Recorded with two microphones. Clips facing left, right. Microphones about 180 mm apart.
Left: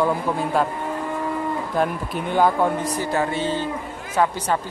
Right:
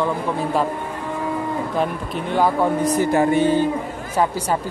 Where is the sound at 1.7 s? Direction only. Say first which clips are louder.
Even; centre (ahead or behind).